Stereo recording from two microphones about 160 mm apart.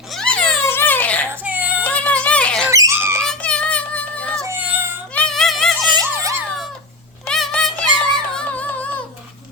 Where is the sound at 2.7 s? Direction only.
20° right (ahead or behind).